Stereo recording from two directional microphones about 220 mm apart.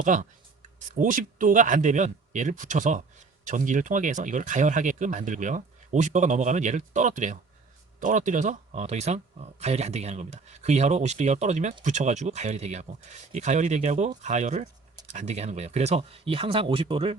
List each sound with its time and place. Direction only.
0.0 s speech: 35° right (ahead or behind)